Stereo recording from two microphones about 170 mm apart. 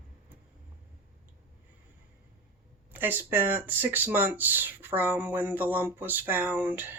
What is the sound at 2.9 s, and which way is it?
Speech, 10° right (ahead or behind).